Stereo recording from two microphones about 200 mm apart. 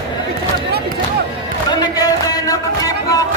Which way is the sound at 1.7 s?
20° left (ahead or behind).